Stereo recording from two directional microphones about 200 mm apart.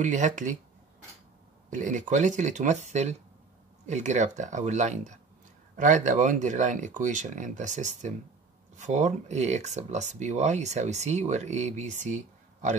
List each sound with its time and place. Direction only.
0.0 s speech: 40° right (ahead or behind)
1.7 s speech: 40° right (ahead or behind)